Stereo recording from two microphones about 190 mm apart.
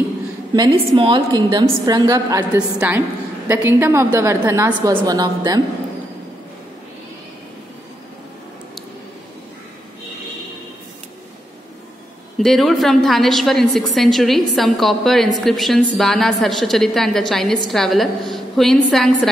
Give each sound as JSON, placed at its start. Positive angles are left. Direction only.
{"t": 0.6, "sound": "a woman's voice", "side_deg": -25}
{"t": 12.4, "sound": "a woman's voice", "side_deg": 0}